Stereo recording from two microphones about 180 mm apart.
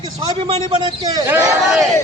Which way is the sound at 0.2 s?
30° right (ahead or behind).